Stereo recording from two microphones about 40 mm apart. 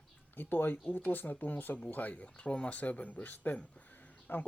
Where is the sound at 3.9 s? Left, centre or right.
Left.